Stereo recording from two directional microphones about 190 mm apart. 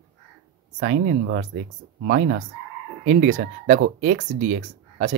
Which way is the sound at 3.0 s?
40° right (ahead or behind).